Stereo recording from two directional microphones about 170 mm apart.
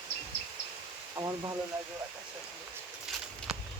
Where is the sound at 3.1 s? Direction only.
Centre (ahead or behind).